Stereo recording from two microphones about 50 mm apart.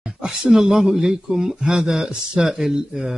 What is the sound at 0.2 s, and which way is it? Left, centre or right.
Speech, centre.